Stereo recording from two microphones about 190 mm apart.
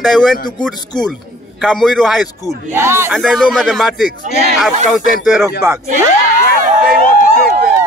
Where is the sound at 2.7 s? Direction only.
15° right (ahead or behind).